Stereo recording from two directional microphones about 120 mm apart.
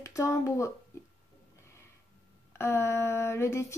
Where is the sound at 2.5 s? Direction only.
20° left (ahead or behind).